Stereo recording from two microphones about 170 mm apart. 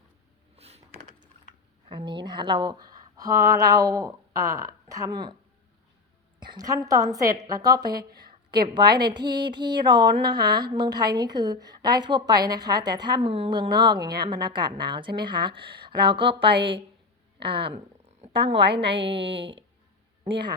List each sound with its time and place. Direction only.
0.5 s a sound: 35° right (ahead or behind)
1.9 s speech: 25° right (ahead or behind)
6.4 s a woman's voice: 25° right (ahead or behind)
16.6 s a woman's voice: 90° right
17.5 s speech: 30° right (ahead or behind)
18.7 s a woman's voice: 90° right